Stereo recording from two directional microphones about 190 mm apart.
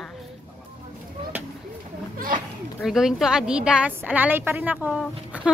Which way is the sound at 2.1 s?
45° right (ahead or behind).